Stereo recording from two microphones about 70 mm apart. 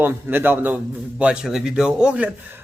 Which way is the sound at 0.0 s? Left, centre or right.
Right.